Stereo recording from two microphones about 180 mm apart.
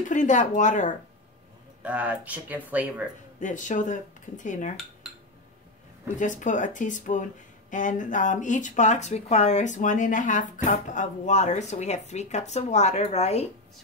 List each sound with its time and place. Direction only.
0.0 s speech: 45° left (ahead or behind)
1.8 s speech: 10° right (ahead or behind)
3.3 s speech: 45° left (ahead or behind)
6.1 s speech: 45° left (ahead or behind)